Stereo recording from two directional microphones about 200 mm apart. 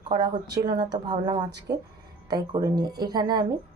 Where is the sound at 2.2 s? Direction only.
20° right (ahead or behind).